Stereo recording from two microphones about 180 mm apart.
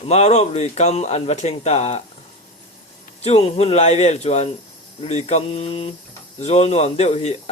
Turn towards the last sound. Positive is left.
turn(degrees=35)  # may be behind; listen again after turning